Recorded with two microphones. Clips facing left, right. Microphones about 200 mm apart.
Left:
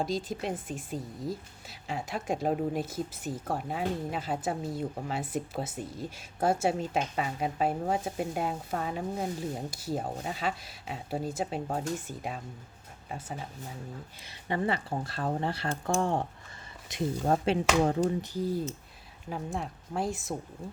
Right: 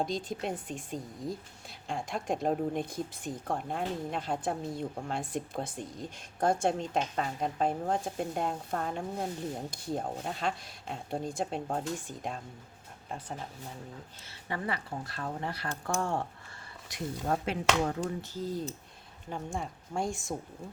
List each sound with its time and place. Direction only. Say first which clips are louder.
0.0 s speech: left 1 dB; centre (ahead or behind)
14.3 s speech: left 5 dB; 25° left (ahead or behind)
15.7 s speech: left 3 dB; 20° left (ahead or behind)
18.2 s speech: left 4 dB; 10° left (ahead or behind)
19.3 s speech: left 2 dB; centre (ahead or behind)